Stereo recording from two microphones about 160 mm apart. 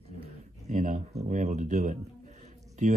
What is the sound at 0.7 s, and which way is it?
A man's voice, 55° right (ahead or behind).